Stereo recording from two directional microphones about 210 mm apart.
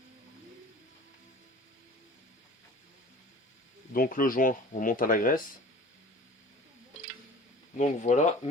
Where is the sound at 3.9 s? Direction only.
40° left (ahead or behind).